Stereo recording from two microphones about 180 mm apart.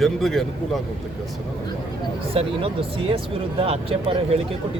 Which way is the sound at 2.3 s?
30° right (ahead or behind).